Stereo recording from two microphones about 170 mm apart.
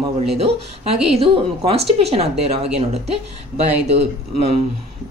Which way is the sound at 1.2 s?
35° right (ahead or behind).